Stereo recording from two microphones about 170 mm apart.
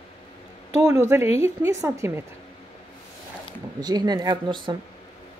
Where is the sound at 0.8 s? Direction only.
15° right (ahead or behind).